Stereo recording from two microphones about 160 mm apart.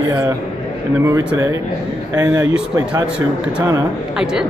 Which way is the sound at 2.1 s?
15° right (ahead or behind).